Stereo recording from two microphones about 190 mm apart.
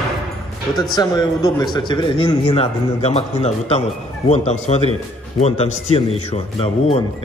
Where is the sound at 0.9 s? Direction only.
20° left (ahead or behind).